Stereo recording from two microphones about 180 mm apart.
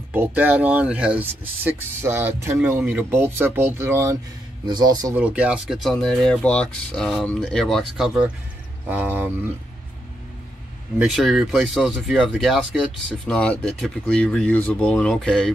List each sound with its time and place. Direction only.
0.1 s speech: 10° right (ahead or behind)
5.1 s speech: 5° right (ahead or behind)
11.0 s speech: centre (ahead or behind)